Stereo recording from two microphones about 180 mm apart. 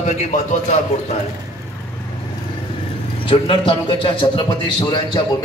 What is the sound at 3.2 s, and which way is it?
A man's voice, 30° left (ahead or behind).